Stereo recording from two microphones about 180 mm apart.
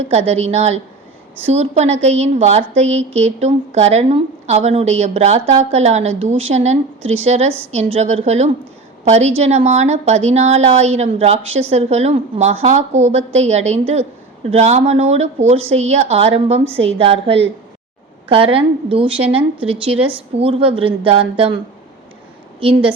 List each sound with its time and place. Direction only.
0.1 s a woman's voice: 35° right (ahead or behind)
22.6 s a woman's voice: 30° right (ahead or behind)